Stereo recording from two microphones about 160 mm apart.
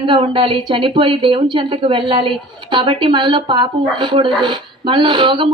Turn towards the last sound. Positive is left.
turn(degrees=-30)  # may be behind; listen again after turning